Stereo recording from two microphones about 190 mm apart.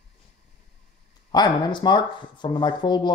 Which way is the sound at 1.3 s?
20° left (ahead or behind).